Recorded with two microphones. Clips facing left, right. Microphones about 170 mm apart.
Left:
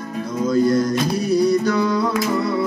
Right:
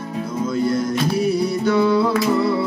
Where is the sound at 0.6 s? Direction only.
5° right (ahead or behind).